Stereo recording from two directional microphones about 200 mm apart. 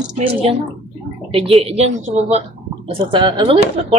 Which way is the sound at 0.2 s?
25° right (ahead or behind).